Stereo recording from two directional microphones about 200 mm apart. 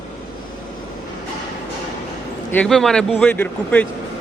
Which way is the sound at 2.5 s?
5° left (ahead or behind).